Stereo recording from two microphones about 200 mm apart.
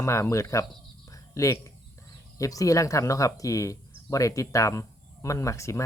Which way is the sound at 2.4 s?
15° left (ahead or behind).